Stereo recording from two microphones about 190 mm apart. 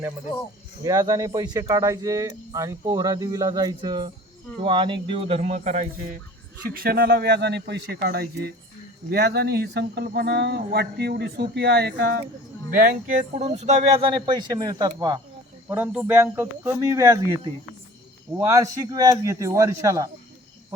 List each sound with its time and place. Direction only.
0.8 s speech: 20° right (ahead or behind)
5.4 s speech: 40° right (ahead or behind)
6.7 s speech: 50° right (ahead or behind)
12.7 s speech: 45° right (ahead or behind); by 20.1 s 15° right (ahead or behind)